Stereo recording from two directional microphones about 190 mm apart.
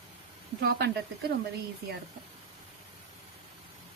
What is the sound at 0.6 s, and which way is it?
Speech, 60° right (ahead or behind).